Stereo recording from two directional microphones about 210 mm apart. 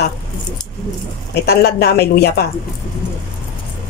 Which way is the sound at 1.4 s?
50° left (ahead or behind).